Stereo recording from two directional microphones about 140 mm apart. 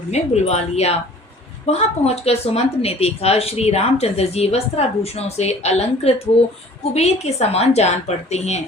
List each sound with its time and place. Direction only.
0.1 s speech: 50° left (ahead or behind)